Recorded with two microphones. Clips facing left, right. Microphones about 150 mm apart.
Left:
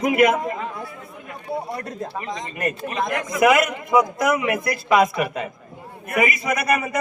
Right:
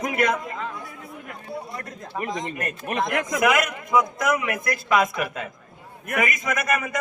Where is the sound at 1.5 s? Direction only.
60° left (ahead or behind).